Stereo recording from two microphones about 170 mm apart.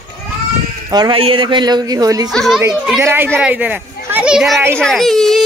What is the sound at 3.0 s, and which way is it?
A child's voice, 15° right (ahead or behind).